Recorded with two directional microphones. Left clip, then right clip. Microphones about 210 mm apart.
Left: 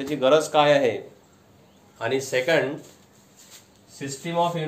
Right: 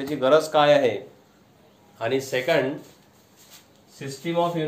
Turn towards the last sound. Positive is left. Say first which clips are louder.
# even
turn(degrees=10)  # may be behind; listen again after turning